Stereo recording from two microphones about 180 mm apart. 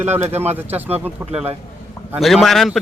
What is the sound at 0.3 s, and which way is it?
Speech, 35° right (ahead or behind).